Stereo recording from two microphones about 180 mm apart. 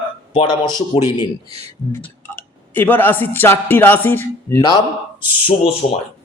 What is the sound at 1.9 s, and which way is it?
Speech, 10° left (ahead or behind).